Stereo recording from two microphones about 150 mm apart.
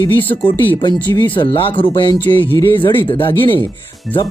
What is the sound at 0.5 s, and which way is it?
Speech, 15° left (ahead or behind).